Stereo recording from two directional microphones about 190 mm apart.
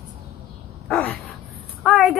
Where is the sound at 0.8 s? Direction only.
5° left (ahead or behind).